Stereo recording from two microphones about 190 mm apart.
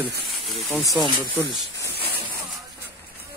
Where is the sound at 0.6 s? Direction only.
15° left (ahead or behind).